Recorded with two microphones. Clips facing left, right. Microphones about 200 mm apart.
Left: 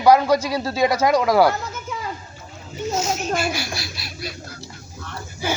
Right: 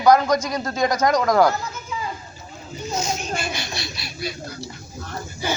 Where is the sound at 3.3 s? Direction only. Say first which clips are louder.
Left 4 dB; 5° left (ahead or behind).